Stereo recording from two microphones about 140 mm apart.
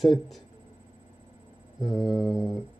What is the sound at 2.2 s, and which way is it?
Music, 30° left (ahead or behind).